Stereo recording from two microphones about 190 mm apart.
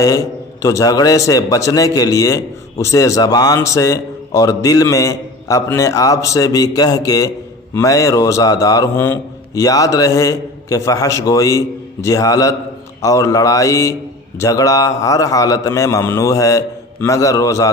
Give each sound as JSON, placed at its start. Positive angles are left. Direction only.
{"t": 0.0, "sound": "a man's voice", "side_deg": 20}